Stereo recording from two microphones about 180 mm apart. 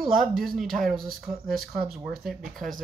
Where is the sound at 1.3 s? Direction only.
55° right (ahead or behind).